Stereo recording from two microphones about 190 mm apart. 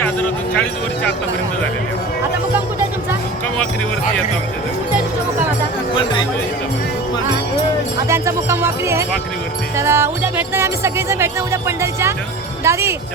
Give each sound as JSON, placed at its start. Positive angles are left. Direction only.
{"t": 0.0, "sound": "speech", "side_deg": 10}
{"t": 5.9, "sound": "speech", "side_deg": 25}
{"t": 8.0, "sound": "speech", "side_deg": -15}